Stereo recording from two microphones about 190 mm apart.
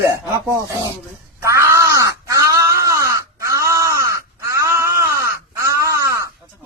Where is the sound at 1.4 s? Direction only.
15° right (ahead or behind).